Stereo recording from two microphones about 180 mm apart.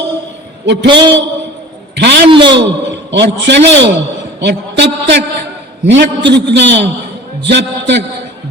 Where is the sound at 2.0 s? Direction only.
70° right (ahead or behind).